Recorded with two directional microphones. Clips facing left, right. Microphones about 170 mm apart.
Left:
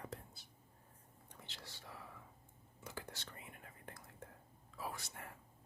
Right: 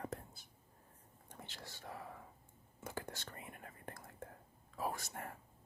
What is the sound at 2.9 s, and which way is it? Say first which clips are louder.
Whispering: right 4 dB; 50° right (ahead or behind).